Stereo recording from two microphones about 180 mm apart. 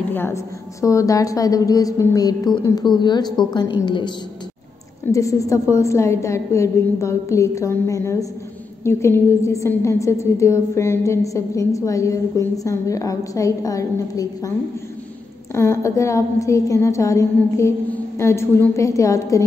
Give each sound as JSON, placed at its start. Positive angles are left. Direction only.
{"t": 0.1, "sound": "a woman's voice", "side_deg": 15}
{"t": 15.5, "sound": "a woman's voice", "side_deg": 15}